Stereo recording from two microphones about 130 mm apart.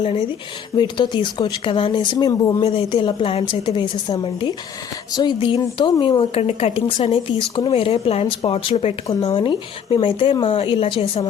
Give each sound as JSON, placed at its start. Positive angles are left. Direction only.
{"t": 0.0, "sound": "speech", "side_deg": 45}
{"t": 2.6, "sound": "speech", "side_deg": 45}
{"t": 9.3, "sound": "speech", "side_deg": 40}